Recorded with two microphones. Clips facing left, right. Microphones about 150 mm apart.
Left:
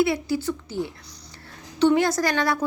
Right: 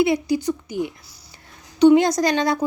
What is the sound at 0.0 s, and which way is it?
A woman's voice, 15° right (ahead or behind).